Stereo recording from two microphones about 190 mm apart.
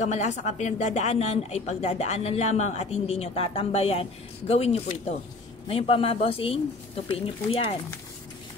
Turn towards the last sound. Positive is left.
turn(degrees=30)  # may be behind; listen again after turning